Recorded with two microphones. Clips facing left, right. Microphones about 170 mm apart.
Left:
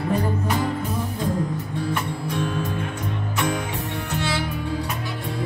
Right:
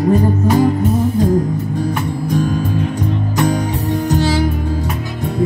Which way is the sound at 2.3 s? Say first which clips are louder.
Right 9 dB; 40° right (ahead or behind).